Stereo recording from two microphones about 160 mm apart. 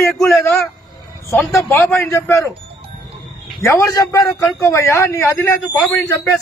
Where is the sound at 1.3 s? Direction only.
20° left (ahead or behind).